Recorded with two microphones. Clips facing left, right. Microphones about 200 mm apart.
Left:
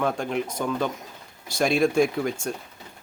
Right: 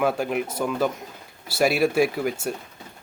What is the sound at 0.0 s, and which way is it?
Speech, 5° right (ahead or behind).